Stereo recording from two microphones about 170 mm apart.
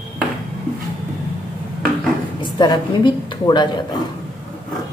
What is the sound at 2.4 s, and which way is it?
A woman's voice, 25° left (ahead or behind).